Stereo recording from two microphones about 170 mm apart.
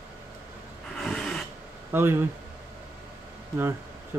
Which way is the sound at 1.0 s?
5° left (ahead or behind).